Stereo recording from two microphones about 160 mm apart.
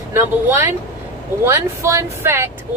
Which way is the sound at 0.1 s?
15° right (ahead or behind).